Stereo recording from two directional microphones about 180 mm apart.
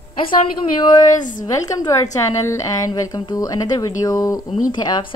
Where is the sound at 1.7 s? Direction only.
20° left (ahead or behind).